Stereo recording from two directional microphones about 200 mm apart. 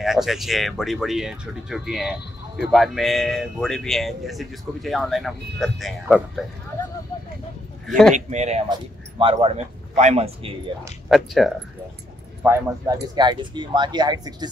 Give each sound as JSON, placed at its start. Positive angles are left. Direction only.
{"t": 0.0, "sound": "speech", "side_deg": 0}
{"t": 8.1, "sound": "a man's voice", "side_deg": -35}
{"t": 11.1, "sound": "speech", "side_deg": 0}
{"t": 12.4, "sound": "speech", "side_deg": -15}